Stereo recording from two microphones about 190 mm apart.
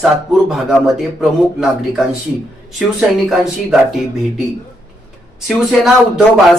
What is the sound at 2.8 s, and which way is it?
Speech, centre (ahead or behind).